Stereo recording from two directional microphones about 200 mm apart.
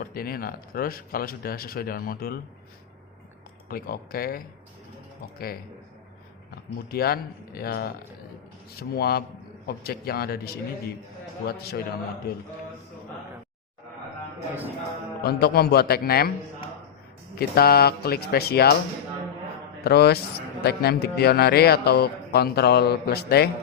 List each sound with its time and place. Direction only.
0.0 s speech: 50° left (ahead or behind)
3.7 s speech: 50° left (ahead or behind)
6.7 s speech: 50° left (ahead or behind)
15.2 s speech: 50° left (ahead or behind)
17.3 s speech: 50° left (ahead or behind)
19.8 s speech: 55° left (ahead or behind)